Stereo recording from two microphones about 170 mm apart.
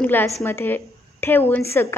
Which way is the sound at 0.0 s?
10° left (ahead or behind).